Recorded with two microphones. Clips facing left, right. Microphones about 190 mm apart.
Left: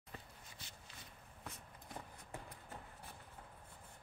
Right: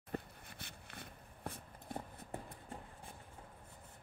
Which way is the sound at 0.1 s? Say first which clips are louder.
Right 11 dB; 60° right (ahead or behind).